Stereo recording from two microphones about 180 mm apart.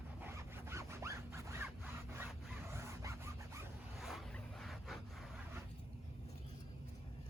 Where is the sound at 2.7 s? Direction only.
15° right (ahead or behind).